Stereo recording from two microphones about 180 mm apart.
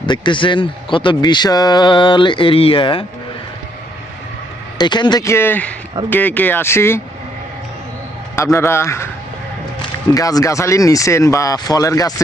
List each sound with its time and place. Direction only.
0.0 s speech: 25° left (ahead or behind)
4.8 s speech: 25° left (ahead or behind)
8.5 s speech: 15° left (ahead or behind)
10.2 s speech: 20° left (ahead or behind)